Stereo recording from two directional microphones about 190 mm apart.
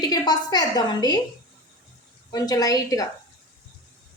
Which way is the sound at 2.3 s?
20° left (ahead or behind).